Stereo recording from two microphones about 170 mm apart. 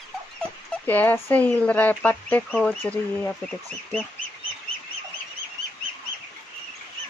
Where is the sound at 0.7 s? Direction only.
10° left (ahead or behind).